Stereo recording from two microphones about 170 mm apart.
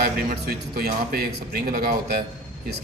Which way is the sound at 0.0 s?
65° right (ahead or behind).